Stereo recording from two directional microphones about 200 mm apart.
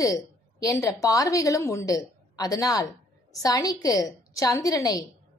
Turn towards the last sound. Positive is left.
turn(degrees=15)  # may be behind; listen again after turning